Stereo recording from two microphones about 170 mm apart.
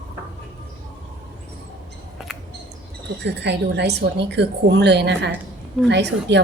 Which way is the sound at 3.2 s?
85° right.